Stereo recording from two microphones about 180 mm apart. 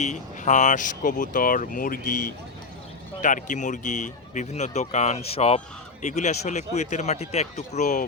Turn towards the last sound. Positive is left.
turn(degrees=45)  # may be behind; listen again after turning